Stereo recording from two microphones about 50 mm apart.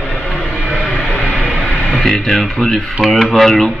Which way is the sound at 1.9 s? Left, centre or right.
Centre.